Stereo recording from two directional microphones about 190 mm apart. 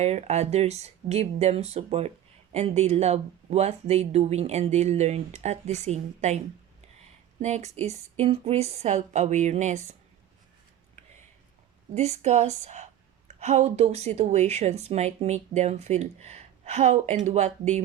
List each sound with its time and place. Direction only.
0.0 s speech: 35° right (ahead or behind)
7.4 s speech: 35° right (ahead or behind)
11.9 s speech: 35° right (ahead or behind)